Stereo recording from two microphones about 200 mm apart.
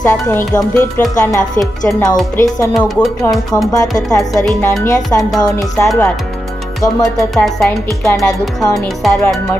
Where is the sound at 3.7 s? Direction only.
20° left (ahead or behind).